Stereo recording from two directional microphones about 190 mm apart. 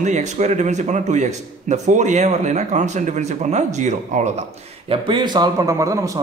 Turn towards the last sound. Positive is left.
turn(degrees=-15)  # may be behind; listen again after turning